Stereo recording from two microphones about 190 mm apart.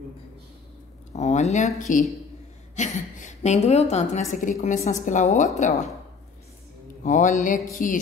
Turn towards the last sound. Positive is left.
turn(degrees=45)  # may be behind; listen again after turning